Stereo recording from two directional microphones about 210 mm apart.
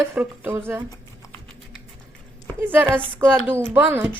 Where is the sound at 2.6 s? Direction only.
10° right (ahead or behind).